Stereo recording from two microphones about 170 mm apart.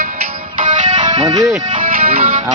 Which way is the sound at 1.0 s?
25° right (ahead or behind).